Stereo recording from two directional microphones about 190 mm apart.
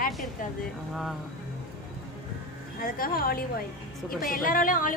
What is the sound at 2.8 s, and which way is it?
A woman's voice, 50° left (ahead or behind).